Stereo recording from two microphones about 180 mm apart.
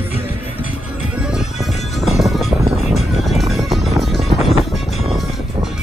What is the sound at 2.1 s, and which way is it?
Music, centre (ahead or behind).